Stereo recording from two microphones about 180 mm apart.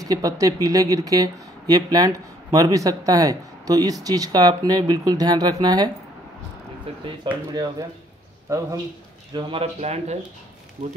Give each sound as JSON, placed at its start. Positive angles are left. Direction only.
{"t": 0.0, "sound": "speech", "side_deg": -20}
{"t": 7.3, "sound": "speech", "side_deg": -25}
{"t": 8.5, "sound": "a man's voice", "side_deg": -20}